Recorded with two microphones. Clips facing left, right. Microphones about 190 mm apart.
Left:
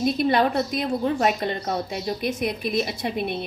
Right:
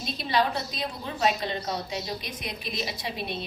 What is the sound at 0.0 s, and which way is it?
A woman's voice, 55° left (ahead or behind).